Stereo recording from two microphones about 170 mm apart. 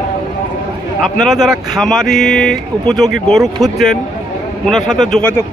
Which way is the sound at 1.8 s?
Centre (ahead or behind).